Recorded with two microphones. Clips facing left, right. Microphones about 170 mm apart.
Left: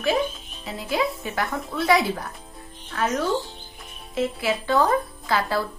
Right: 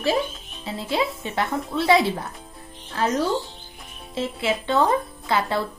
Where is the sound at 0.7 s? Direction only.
25° right (ahead or behind).